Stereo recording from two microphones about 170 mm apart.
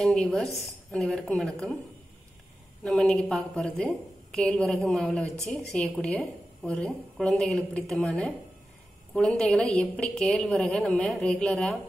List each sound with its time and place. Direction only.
0.0 s a woman's voice: 5° left (ahead or behind)
2.8 s a woman's voice: 5° left (ahead or behind)
5.3 s a woman's voice: 15° right (ahead or behind)
5.7 s a woman's voice: 5° left (ahead or behind)